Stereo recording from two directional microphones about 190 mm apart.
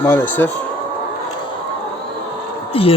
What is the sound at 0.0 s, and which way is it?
Speech, 10° left (ahead or behind).